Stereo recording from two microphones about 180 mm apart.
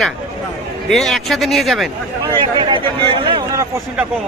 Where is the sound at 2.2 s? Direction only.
25° right (ahead or behind).